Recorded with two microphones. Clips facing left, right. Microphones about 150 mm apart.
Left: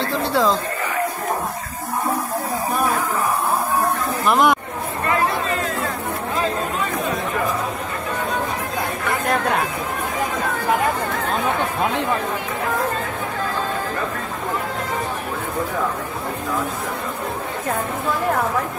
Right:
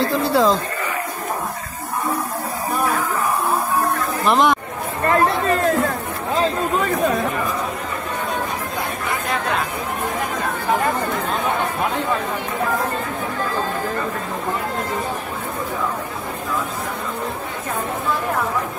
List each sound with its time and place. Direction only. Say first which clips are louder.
0.3 s speech: right 2 dB; centre (ahead or behind)
4.3 s speech: even; 5° left (ahead or behind)
5.2 s chatter: right 4 dB; 50° right (ahead or behind)